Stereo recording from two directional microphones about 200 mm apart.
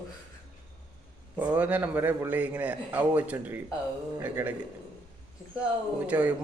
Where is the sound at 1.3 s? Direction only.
10° right (ahead or behind).